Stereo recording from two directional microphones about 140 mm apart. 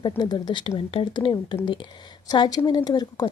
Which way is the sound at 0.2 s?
30° left (ahead or behind).